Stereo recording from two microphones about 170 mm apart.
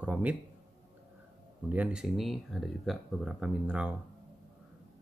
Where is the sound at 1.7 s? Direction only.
5° right (ahead or behind).